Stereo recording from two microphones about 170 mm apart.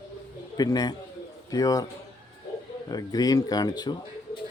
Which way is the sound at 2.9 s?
25° left (ahead or behind).